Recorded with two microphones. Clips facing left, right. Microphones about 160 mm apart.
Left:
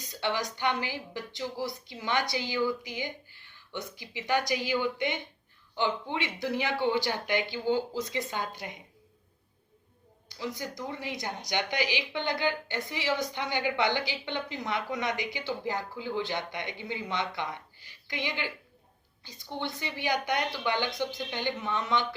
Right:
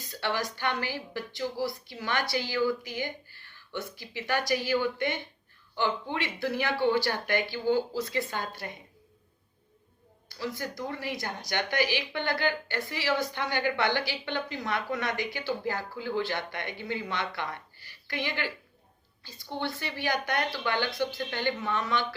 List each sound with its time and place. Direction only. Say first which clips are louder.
0.0 s a woman's voice: even; 20° left (ahead or behind)
10.2 s a woman's voice: right 1 dB; 20° left (ahead or behind)